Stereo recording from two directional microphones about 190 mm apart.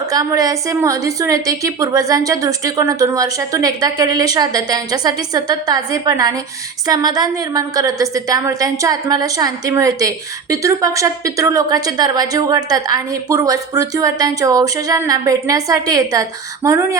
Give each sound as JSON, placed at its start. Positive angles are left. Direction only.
{"t": 0.1, "sound": "a woman's voice", "side_deg": -20}